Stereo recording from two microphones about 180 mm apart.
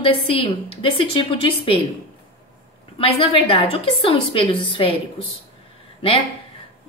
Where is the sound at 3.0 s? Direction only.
30° left (ahead or behind).